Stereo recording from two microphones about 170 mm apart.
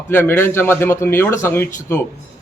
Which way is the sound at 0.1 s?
15° left (ahead or behind).